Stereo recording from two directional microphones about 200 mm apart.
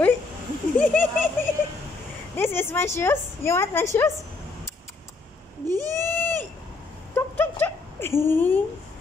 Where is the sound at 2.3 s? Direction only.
10° left (ahead or behind).